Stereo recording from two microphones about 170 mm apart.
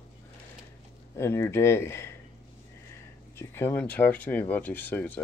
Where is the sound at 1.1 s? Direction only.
15° left (ahead or behind).